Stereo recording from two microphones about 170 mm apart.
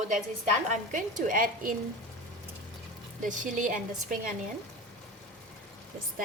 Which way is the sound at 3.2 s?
50° right (ahead or behind).